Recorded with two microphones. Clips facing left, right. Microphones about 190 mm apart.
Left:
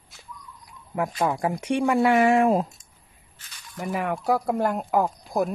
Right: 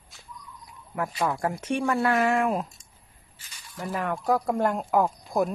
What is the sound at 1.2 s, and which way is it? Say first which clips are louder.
Speech: left 2 dB; 15° left (ahead or behind).